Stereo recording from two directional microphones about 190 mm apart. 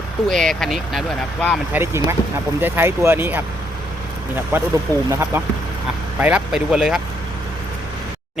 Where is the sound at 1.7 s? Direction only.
15° right (ahead or behind).